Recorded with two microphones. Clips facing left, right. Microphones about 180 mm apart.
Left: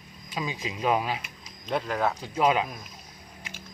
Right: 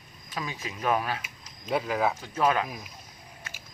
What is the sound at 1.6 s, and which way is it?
Speech, 5° right (ahead or behind).